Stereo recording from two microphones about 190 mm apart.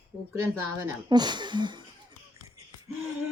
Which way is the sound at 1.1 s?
25° right (ahead or behind).